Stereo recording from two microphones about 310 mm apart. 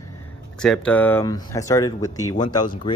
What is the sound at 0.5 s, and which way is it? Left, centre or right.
Speech, centre.